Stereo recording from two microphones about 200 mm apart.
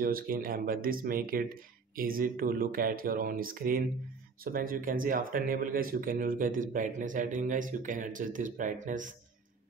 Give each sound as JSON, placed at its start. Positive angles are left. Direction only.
{"t": 0.0, "sound": "speech", "side_deg": -45}